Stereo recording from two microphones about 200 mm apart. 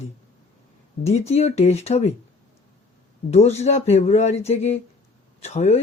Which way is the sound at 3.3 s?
35° left (ahead or behind).